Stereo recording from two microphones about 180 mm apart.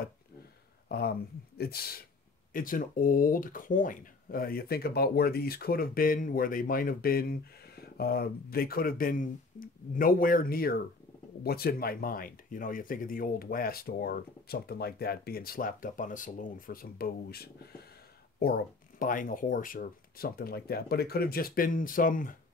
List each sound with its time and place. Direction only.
0.8 s speech: 60° left (ahead or behind)